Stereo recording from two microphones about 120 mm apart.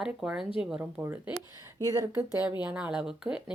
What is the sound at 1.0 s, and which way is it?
Speech, 20° right (ahead or behind).